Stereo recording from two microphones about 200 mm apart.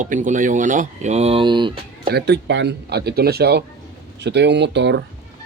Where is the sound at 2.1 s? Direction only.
55° right (ahead or behind).